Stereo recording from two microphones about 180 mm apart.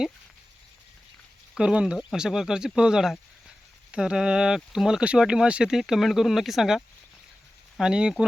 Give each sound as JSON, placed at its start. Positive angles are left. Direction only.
{"t": 1.5, "sound": "speech", "side_deg": -5}